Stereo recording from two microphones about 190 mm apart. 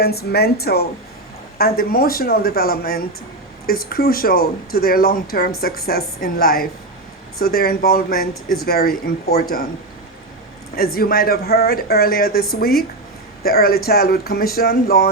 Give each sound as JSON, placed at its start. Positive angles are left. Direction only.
{"t": 0.0, "sound": "a woman's voice", "side_deg": 55}
{"t": 10.8, "sound": "a woman's voice", "side_deg": 50}